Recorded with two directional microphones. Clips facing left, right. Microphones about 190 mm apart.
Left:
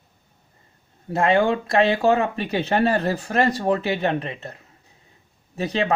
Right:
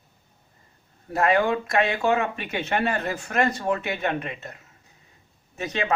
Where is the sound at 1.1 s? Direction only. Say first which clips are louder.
Left 2 dB; 25° left (ahead or behind).